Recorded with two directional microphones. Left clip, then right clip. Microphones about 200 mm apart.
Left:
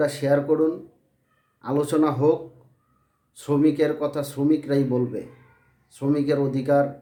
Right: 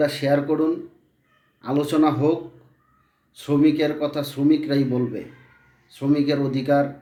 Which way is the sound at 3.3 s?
20° left (ahead or behind).